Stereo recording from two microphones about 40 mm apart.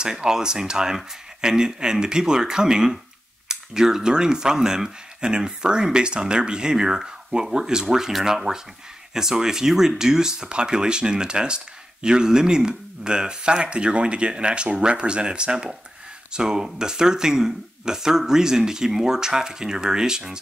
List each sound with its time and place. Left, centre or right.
0.0 s speech: centre
8.5 s speech: right